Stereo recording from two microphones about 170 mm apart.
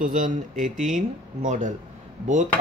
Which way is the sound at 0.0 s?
50° right (ahead or behind).